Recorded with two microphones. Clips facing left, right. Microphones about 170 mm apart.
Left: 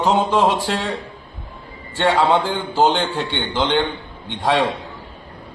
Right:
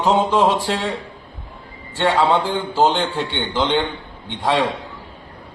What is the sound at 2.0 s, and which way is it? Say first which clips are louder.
A man's voice: even; centre (ahead or behind).